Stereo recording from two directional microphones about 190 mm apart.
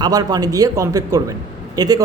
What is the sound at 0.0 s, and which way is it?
A man's voice, 20° right (ahead or behind).